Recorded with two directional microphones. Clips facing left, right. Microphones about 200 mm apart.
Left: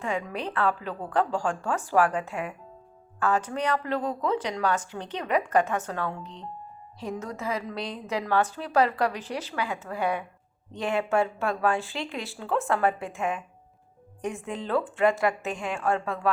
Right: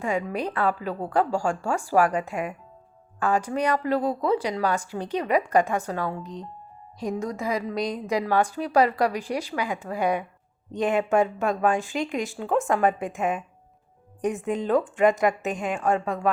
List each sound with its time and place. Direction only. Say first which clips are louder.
0.0 s a woman's voice: right 4 dB; 10° right (ahead or behind)